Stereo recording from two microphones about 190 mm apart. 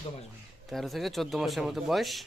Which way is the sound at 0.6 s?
Centre (ahead or behind).